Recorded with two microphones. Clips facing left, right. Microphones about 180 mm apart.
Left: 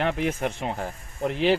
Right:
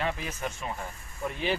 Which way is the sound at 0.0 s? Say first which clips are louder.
Left 7 dB; 65° left (ahead or behind).